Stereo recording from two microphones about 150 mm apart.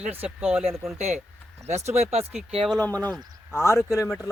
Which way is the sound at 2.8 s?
10° left (ahead or behind).